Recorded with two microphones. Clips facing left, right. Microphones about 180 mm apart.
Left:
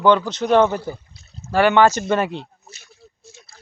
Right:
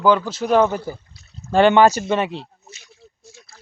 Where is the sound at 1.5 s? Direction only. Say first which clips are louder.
Right 2 dB; 25° right (ahead or behind).